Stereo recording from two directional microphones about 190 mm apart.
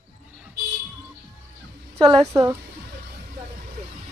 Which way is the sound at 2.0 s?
25° right (ahead or behind).